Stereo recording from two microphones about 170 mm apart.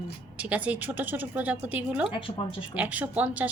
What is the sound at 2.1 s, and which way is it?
Speech, 30° left (ahead or behind).